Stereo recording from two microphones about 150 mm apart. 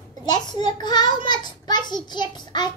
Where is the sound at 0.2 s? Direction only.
30° left (ahead or behind).